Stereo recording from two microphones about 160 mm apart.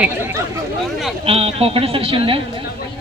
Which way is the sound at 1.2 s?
35° right (ahead or behind).